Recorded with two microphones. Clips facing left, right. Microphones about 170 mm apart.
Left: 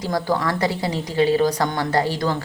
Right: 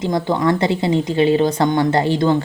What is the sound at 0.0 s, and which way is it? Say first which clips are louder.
A woman's voice: right 4 dB; 20° right (ahead or behind).